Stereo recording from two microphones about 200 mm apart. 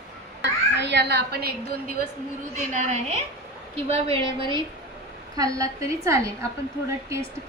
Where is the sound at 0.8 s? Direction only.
60° right (ahead or behind).